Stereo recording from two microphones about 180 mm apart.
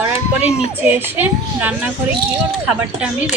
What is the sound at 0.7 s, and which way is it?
A woman's voice, 10° right (ahead or behind).